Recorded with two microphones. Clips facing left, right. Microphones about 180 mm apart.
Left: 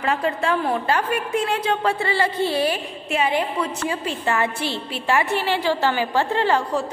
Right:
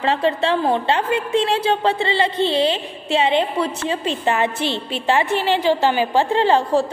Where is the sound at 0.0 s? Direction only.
30° right (ahead or behind).